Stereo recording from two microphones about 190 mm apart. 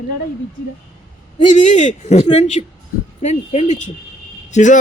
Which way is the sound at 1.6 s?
40° left (ahead or behind).